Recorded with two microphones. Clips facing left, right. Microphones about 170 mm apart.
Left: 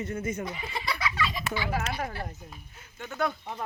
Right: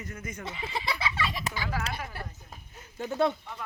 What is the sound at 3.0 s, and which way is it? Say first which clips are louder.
Speech: right 4 dB; 30° right (ahead or behind).